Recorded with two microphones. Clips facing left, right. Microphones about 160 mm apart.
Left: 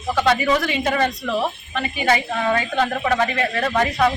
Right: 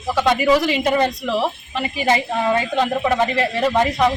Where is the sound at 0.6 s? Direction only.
20° right (ahead or behind).